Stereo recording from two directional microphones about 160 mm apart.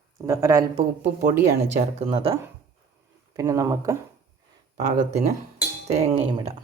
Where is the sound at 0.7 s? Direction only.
45° right (ahead or behind).